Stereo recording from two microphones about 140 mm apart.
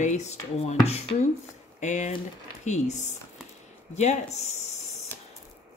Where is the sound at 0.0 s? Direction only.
55° left (ahead or behind).